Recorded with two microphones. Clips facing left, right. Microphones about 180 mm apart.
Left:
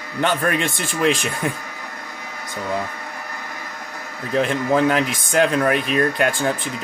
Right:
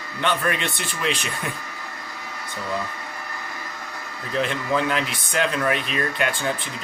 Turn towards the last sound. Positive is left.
turn(degrees=45)  # may be behind; listen again after turning